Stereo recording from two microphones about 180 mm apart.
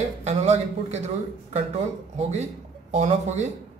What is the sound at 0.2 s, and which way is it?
A man's voice, 40° right (ahead or behind).